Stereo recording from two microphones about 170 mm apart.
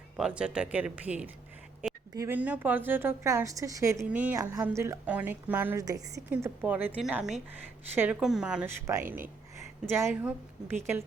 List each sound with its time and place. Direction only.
0.2 s a woman's voice: 5° right (ahead or behind)
1.8 s a sound: 10° right (ahead or behind)
2.1 s a woman's voice: 15° right (ahead or behind)
6.3 s a woman's voice: 10° right (ahead or behind)